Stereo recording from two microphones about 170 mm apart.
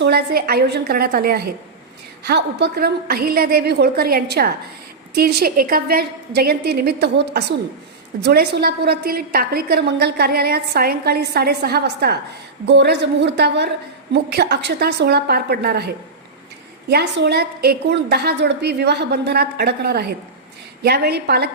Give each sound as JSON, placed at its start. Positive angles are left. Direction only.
{"t": 0.0, "sound": "a woman's voice", "side_deg": -70}
{"t": 2.2, "sound": "a woman's voice", "side_deg": -75}
{"t": 12.6, "sound": "a woman's voice", "side_deg": -85}